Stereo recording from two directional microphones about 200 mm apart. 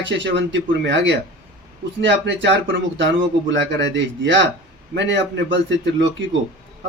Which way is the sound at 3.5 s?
65° right (ahead or behind).